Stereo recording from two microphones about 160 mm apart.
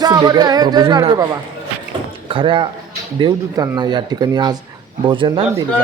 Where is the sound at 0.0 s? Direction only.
25° right (ahead or behind).